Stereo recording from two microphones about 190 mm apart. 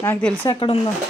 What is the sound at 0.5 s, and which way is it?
Speech, 30° left (ahead or behind).